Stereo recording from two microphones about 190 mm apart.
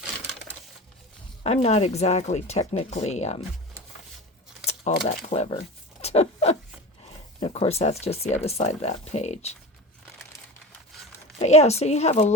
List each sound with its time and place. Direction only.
1.5 s speech: 35° left (ahead or behind)
5.0 s speech: 35° left (ahead or behind)
11.3 s speech: 35° left (ahead or behind)